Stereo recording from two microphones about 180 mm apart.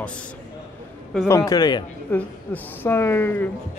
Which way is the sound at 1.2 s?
15° left (ahead or behind).